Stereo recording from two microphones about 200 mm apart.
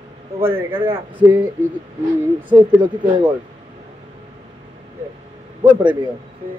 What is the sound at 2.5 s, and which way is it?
Speech, 20° right (ahead or behind).